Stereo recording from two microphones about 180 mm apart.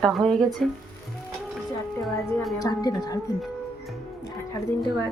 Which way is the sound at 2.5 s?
20° left (ahead or behind).